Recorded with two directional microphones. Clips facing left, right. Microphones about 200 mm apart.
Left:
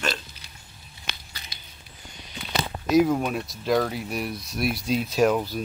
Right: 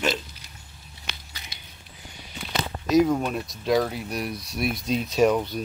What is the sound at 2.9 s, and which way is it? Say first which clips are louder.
Speech: even; 5° left (ahead or behind).